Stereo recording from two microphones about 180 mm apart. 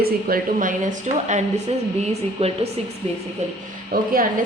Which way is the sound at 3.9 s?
60° right (ahead or behind).